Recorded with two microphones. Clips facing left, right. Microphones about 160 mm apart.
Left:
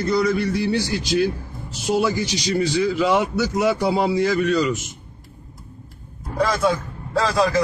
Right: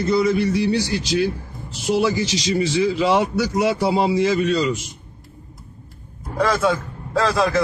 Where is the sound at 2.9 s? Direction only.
30° right (ahead or behind).